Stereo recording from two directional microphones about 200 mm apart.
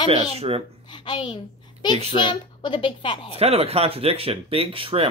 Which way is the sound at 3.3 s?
30° right (ahead or behind).